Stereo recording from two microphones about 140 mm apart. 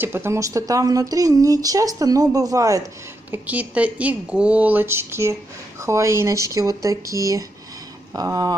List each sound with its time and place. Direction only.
0.0 s speech: 15° right (ahead or behind)
3.3 s speech: 10° right (ahead or behind); by 8.5 s 25° right (ahead or behind)